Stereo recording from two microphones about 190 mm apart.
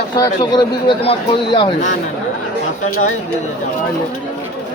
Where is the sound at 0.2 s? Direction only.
25° left (ahead or behind).